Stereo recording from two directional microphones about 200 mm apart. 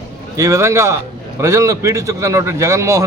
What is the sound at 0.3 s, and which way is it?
A man's voice, 15° right (ahead or behind).